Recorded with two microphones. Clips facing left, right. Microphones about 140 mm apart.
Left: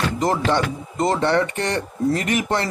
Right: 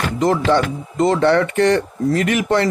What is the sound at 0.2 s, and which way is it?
Speech, 35° left (ahead or behind).